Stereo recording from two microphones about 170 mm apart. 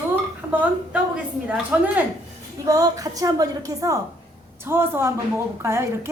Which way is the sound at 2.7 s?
20° right (ahead or behind).